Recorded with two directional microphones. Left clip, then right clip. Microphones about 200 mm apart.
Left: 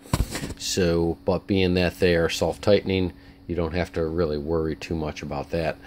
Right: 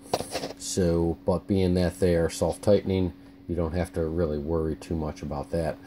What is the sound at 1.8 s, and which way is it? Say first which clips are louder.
Speech: left 3 dB; 35° left (ahead or behind).